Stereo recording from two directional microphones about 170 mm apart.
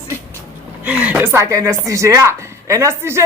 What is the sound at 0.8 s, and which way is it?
Speech, 10° right (ahead or behind).